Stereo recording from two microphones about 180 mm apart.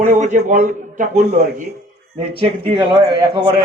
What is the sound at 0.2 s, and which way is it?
A man's voice, 40° right (ahead or behind).